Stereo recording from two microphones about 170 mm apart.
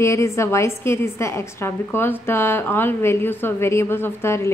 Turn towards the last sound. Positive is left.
turn(degrees=15)  # may be behind; listen again after turning